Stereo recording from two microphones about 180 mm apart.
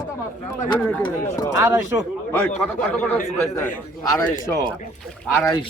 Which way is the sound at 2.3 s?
5° left (ahead or behind).